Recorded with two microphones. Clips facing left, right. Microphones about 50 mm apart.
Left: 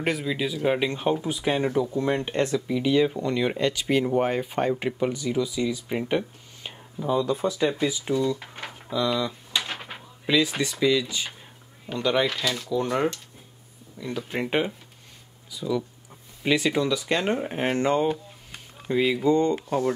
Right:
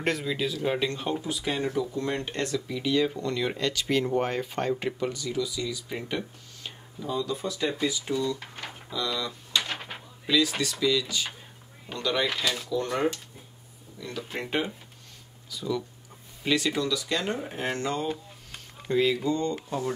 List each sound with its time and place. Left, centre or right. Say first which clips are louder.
0.0 s speech: left 2 dB; centre
9.6 s a sound: left 1 dB; centre
10.2 s speech: left 2 dB; left
12.3 s speech: left 2 dB; centre; by 18.1 s left
18.9 s speech: left 3 dB; centre
19.3 s speech: left 7 dB; left